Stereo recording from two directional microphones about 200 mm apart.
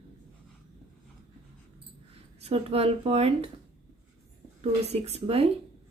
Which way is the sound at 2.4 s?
30° right (ahead or behind).